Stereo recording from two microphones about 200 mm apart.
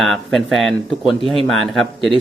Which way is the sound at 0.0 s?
Centre (ahead or behind).